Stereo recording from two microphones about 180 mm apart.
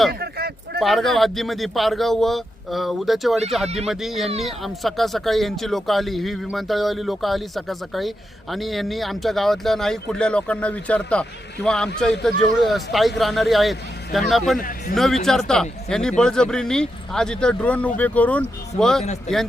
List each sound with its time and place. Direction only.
0.1 s a sound: 60° right (ahead or behind)
0.8 s speech: centre (ahead or behind)
14.6 s speech: 50° left (ahead or behind)
14.9 s speech: centre (ahead or behind)